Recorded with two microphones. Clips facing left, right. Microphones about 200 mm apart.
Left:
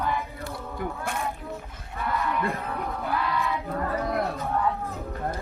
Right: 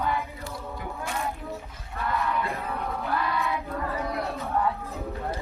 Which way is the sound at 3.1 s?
Centre (ahead or behind).